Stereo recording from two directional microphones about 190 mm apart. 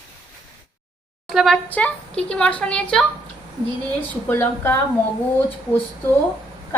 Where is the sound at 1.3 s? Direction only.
Centre (ahead or behind).